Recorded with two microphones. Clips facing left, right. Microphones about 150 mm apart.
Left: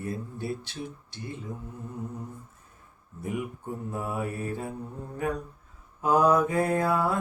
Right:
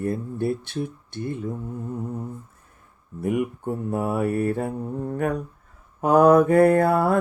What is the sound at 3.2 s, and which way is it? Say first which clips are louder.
Mantra: right 9 dB; 65° right (ahead or behind).